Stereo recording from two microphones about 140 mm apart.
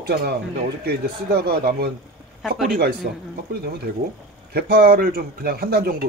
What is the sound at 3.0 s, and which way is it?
Speech, 90° right.